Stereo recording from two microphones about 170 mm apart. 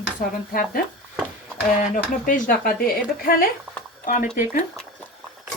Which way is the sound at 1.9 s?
50° left (ahead or behind).